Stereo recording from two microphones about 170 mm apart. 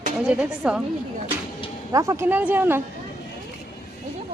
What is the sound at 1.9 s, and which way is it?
Speech, 20° right (ahead or behind).